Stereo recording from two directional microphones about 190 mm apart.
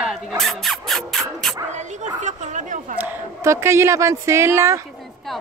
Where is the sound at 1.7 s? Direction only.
40° right (ahead or behind).